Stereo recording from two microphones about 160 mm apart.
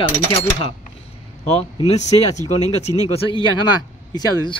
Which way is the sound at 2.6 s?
45° left (ahead or behind).